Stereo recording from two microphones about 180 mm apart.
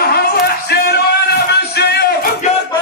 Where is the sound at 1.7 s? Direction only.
65° left (ahead or behind).